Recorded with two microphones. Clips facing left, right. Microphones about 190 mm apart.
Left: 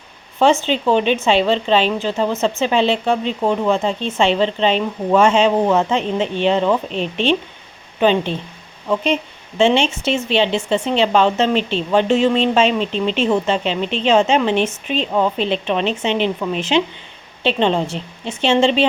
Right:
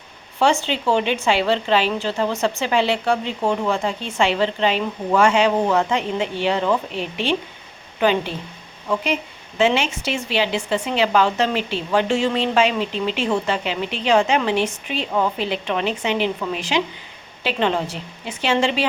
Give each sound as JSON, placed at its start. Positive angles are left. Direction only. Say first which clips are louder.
{"t": 0.6, "sound": "a woman's voice", "louder": "left 4 dB", "side_deg": 20}
{"t": 9.6, "sound": "a woman's voice", "louder": "left 4 dB", "side_deg": 25}